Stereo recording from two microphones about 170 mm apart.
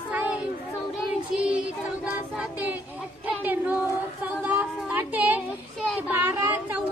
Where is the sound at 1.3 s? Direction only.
5° right (ahead or behind).